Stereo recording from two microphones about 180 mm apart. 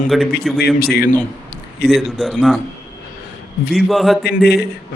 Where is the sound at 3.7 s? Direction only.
Centre (ahead or behind).